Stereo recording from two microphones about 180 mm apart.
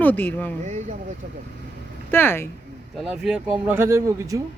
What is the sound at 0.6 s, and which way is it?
Speech, 40° right (ahead or behind).